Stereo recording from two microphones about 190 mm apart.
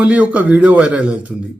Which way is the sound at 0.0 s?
5° right (ahead or behind).